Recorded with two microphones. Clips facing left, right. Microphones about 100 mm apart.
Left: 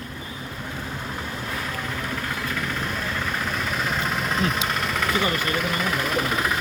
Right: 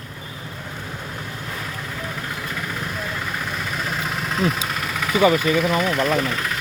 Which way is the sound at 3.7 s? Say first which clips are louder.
Even; centre (ahead or behind).